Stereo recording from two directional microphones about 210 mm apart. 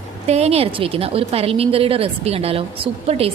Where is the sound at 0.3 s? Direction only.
30° right (ahead or behind).